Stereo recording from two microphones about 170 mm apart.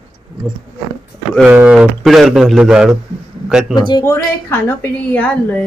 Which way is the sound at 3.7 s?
25° left (ahead or behind).